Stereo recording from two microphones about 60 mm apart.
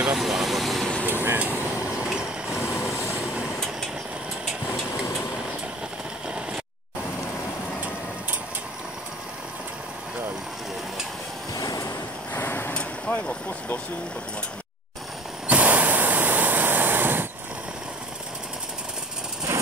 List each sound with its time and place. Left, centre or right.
0.1 s vehicle: centre
1.0 s vehicle: right
2.6 s vehicle: left
6.2 s a sound: centre
11.5 s vehicle: left
12.4 s a sound: left
13.1 s vehicle: left
15.4 s a sound: right
19.5 s vehicle: right